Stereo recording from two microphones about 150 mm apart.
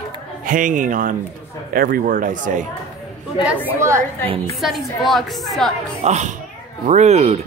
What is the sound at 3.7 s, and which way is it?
Speech, 20° right (ahead or behind).